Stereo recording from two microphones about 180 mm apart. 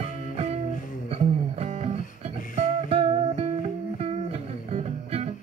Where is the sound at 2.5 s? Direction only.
30° right (ahead or behind).